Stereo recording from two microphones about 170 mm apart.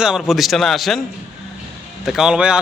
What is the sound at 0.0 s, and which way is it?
A man's voice, 5° right (ahead or behind).